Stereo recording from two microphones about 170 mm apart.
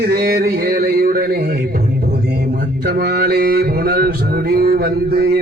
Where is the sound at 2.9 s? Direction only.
70° right (ahead or behind).